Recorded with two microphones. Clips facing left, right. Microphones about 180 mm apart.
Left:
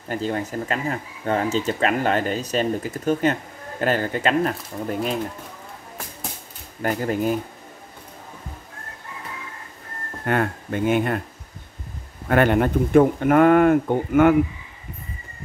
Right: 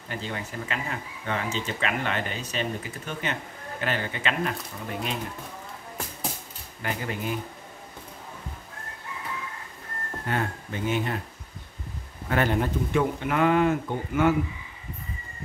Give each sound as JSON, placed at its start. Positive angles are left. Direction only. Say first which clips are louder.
{"t": 0.1, "sound": "speech", "louder": "left 9 dB", "side_deg": 45}
{"t": 6.8, "sound": "speech", "louder": "left 9 dB", "side_deg": 45}
{"t": 10.2, "sound": "speech", "louder": "left 7 dB", "side_deg": 60}
{"t": 12.3, "sound": "speech", "louder": "left 7 dB", "side_deg": 60}